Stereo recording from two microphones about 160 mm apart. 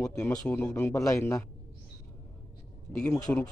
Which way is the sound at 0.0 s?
20° left (ahead or behind).